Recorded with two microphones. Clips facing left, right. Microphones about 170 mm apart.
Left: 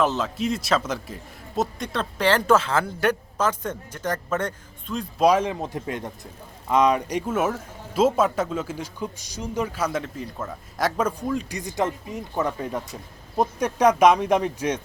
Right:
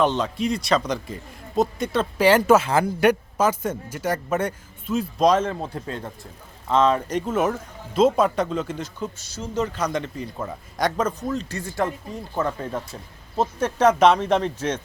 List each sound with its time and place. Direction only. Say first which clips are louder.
0.0 s speech: right 2 dB; 5° left (ahead or behind)
5.2 s a man's voice: left 1 dB; 10° left (ahead or behind)